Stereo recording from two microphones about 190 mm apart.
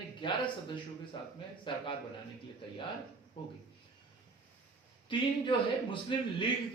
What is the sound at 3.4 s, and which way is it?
Speech, 25° left (ahead or behind).